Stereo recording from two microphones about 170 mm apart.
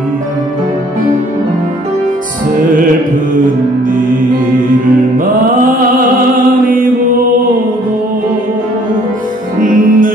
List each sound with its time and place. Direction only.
9.6 s music: 55° right (ahead or behind)